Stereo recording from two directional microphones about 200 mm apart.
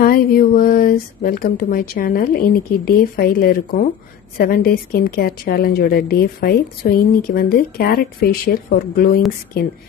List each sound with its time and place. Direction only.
0.0 s a woman's voice: 45° left (ahead or behind)